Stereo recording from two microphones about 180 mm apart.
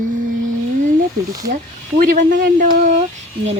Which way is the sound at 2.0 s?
50° right (ahead or behind).